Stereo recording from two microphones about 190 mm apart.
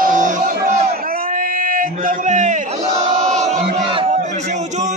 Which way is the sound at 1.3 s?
45° right (ahead or behind).